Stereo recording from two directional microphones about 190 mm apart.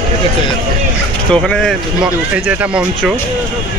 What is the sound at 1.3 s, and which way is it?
Speech, 5° left (ahead or behind).